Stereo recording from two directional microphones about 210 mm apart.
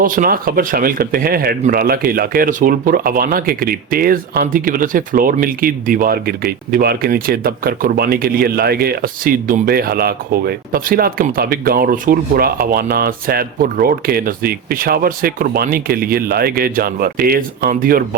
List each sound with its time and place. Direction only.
0.0 s speech: 40° right (ahead or behind)